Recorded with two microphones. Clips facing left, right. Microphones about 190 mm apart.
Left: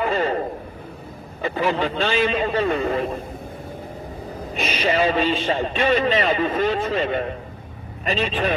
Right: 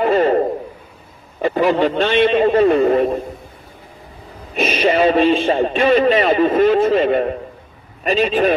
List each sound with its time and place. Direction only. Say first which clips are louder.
0.0 s a sound: right 8 dB; 40° right (ahead or behind)
1.4 s speech: right 7 dB; 35° right (ahead or behind)
4.6 s speech: right 6 dB; 40° right (ahead or behind)